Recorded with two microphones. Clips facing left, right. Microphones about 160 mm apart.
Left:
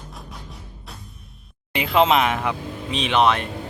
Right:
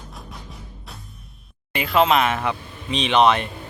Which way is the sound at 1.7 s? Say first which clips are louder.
Even; 20° left (ahead or behind).